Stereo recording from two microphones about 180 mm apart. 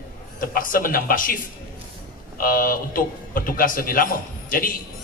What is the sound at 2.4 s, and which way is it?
A man's voice, 50° left (ahead or behind).